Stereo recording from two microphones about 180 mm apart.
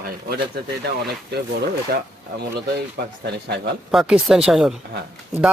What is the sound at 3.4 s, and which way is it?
Speech, 65° right (ahead or behind).